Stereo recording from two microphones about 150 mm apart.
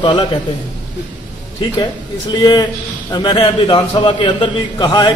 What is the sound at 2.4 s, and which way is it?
A man's voice, 25° left (ahead or behind).